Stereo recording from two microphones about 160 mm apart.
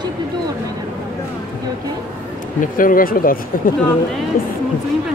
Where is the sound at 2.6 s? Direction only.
60° left (ahead or behind).